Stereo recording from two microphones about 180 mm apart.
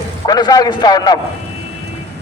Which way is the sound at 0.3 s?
20° left (ahead or behind).